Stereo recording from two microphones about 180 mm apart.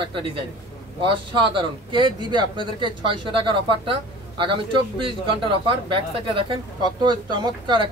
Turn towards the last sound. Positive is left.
turn(degrees=-25)  # may be behind; listen again after turning